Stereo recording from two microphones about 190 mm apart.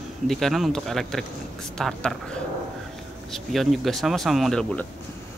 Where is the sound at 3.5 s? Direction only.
Centre (ahead or behind).